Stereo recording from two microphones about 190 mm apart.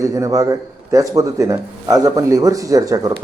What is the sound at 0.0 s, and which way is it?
Speech, 15° right (ahead or behind).